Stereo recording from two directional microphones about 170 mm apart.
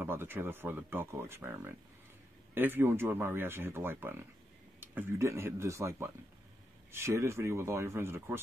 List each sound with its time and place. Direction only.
0.0 s speech: 15° right (ahead or behind)